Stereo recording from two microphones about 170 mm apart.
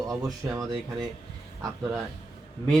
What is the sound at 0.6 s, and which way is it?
Speech, centre (ahead or behind).